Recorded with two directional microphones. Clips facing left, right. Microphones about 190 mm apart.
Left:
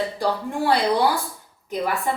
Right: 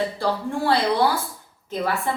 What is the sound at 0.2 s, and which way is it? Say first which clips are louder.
Speech: even; 15° left (ahead or behind).